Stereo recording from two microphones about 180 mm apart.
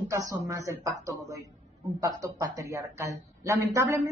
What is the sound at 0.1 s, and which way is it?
A woman's voice, 20° right (ahead or behind).